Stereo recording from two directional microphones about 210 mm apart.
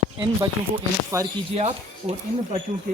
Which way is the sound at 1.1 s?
15° right (ahead or behind).